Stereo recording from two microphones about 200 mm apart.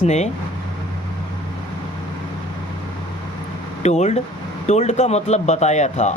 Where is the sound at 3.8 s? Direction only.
35° left (ahead or behind).